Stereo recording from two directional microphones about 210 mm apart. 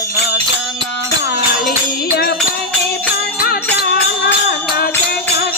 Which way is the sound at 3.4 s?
45° left (ahead or behind).